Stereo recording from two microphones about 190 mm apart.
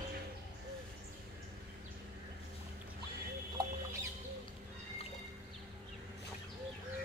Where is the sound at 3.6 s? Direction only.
20° right (ahead or behind).